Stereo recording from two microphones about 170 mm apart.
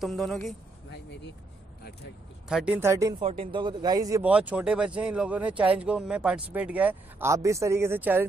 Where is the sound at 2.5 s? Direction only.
5° right (ahead or behind).